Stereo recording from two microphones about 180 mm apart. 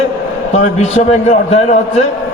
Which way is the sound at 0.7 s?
35° left (ahead or behind).